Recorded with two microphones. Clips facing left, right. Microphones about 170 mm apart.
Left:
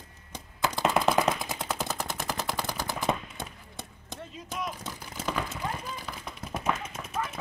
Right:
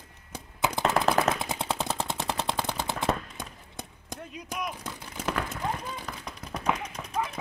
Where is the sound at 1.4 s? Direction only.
30° right (ahead or behind).